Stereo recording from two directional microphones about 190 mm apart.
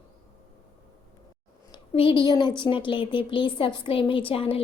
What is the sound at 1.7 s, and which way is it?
A woman's voice, 30° left (ahead or behind).